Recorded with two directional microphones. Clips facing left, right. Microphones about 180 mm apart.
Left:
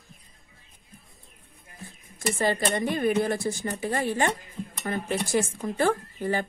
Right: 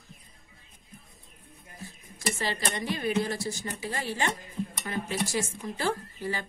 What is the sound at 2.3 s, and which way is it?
Speech, 50° left (ahead or behind).